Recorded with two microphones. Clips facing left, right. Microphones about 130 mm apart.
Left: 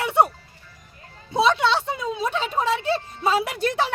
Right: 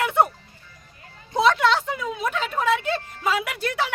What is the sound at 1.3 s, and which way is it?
Speech, 15° left (ahead or behind).